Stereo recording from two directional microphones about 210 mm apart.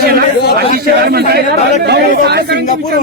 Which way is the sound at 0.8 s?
50° right (ahead or behind).